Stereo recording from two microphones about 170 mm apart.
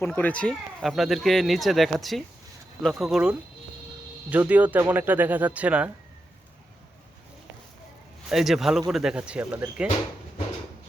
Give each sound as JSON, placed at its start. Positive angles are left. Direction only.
{"t": 0.0, "sound": "speech", "side_deg": 10}
{"t": 8.3, "sound": "speech", "side_deg": 0}